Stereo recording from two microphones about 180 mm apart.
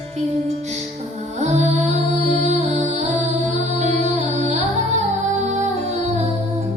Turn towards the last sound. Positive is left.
turn(degrees=-40)  # may be behind; listen again after turning